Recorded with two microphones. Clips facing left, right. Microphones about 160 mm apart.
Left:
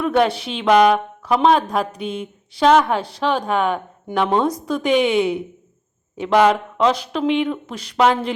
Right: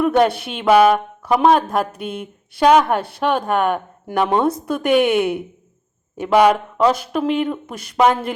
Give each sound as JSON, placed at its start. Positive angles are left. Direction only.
{"t": 0.0, "sound": "a woman's voice", "side_deg": -10}